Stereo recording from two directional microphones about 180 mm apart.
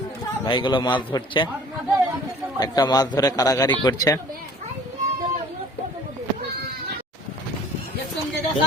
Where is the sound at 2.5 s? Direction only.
20° left (ahead or behind).